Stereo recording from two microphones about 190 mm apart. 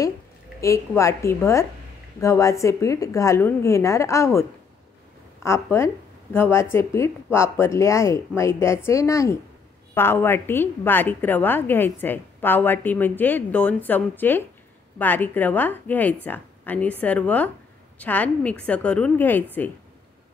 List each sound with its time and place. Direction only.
0.6 s a woman's voice: 15° left (ahead or behind)